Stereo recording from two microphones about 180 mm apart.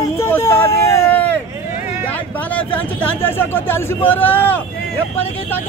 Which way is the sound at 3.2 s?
10° left (ahead or behind).